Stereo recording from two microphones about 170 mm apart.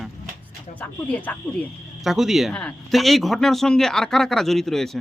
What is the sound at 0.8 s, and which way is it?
Speech, 10° left (ahead or behind).